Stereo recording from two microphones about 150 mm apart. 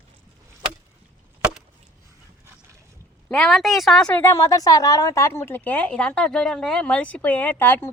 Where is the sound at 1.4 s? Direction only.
5° right (ahead or behind).